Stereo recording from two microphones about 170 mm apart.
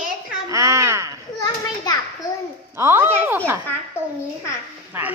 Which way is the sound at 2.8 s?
15° right (ahead or behind).